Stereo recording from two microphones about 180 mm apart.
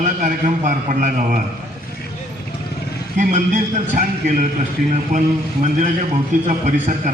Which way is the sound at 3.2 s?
45° right (ahead or behind).